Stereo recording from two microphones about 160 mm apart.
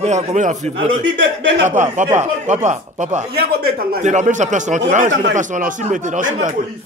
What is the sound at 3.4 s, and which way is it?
Speech, 80° right.